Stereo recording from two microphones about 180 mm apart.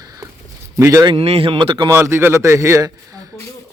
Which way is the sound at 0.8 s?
15° right (ahead or behind).